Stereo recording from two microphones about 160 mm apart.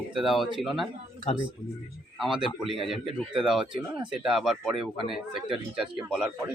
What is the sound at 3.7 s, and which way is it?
Speech, 30° right (ahead or behind).